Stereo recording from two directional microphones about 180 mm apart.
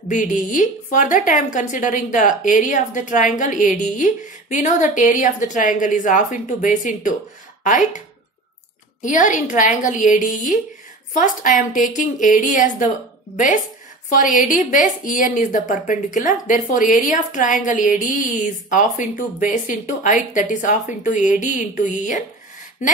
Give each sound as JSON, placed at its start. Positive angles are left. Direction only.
{"t": 0.1, "sound": "a woman's voice", "side_deg": 45}
{"t": 9.0, "sound": "a woman's voice", "side_deg": 45}
{"t": 14.1, "sound": "a woman's voice", "side_deg": 45}